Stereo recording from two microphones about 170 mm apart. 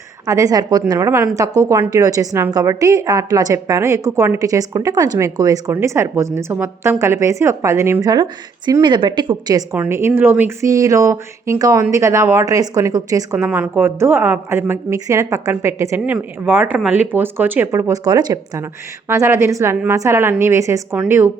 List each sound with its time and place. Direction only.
0.3 s a woman's voice: 20° right (ahead or behind)
8.1 s a woman's voice: 25° right (ahead or behind)
9.7 s a woman's voice: 15° right (ahead or behind)